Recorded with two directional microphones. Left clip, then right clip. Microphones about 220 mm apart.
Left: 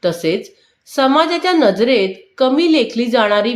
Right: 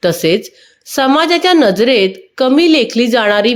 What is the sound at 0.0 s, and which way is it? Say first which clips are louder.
A woman's voice: right 5 dB; 35° right (ahead or behind).